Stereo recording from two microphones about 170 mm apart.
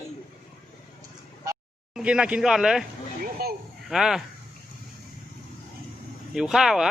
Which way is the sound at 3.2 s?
65° right (ahead or behind).